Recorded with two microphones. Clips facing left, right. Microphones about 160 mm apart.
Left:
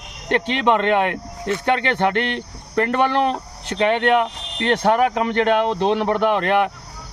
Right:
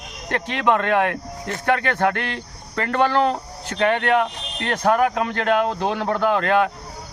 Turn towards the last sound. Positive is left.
turn(degrees=20)  # may be behind; listen again after turning